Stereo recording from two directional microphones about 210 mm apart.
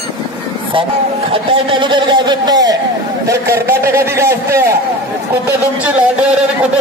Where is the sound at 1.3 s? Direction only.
25° right (ahead or behind).